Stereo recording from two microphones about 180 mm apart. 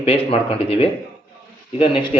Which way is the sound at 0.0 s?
30° left (ahead or behind).